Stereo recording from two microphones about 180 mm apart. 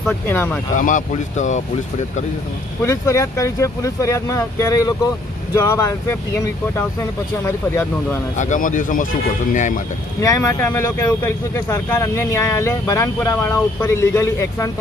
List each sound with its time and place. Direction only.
0.0 s speech: 10° left (ahead or behind)
0.7 s speech: 45° left (ahead or behind)
2.8 s speech: 15° left (ahead or behind)
7.4 s speech: 15° left (ahead or behind)
8.4 s speech: 45° left (ahead or behind)
10.2 s speech: 15° left (ahead or behind)